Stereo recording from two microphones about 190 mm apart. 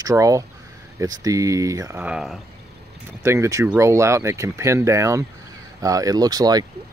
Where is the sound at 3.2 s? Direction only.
15° right (ahead or behind).